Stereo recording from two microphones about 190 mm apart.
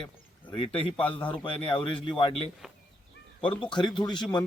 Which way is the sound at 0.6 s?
25° left (ahead or behind).